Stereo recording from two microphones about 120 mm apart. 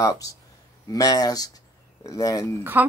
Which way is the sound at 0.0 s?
30° left (ahead or behind).